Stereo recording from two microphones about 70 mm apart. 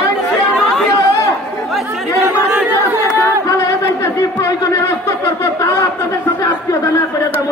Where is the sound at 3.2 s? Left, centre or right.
Left.